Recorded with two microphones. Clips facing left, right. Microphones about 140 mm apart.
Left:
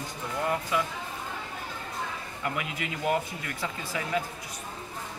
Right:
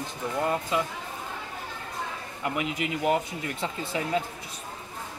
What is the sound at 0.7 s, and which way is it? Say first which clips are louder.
Speech: even; 25° right (ahead or behind).